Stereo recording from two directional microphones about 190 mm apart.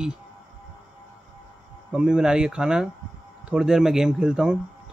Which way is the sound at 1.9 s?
5° right (ahead or behind).